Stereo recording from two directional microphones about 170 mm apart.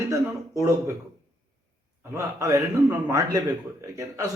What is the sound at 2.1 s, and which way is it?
A man's voice, 20° right (ahead or behind).